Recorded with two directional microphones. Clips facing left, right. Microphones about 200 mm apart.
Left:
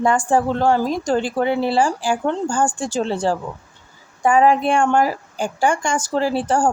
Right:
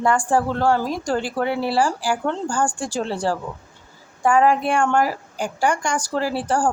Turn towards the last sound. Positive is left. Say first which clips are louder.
# left 3 dB
turn(degrees=25)  # may be behind; listen again after turning